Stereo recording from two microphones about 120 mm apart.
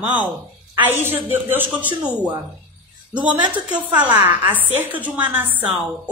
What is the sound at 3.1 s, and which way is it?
A woman's voice, 10° right (ahead or behind).